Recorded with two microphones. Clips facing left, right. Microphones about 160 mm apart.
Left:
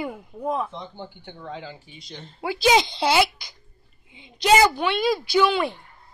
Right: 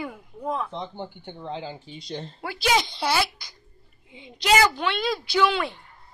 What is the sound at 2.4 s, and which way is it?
Speech, 20° left (ahead or behind).